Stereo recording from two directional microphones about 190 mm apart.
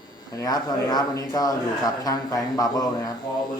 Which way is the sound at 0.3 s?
20° left (ahead or behind).